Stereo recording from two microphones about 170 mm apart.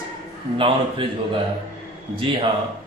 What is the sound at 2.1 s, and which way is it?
Speech, 30° right (ahead or behind).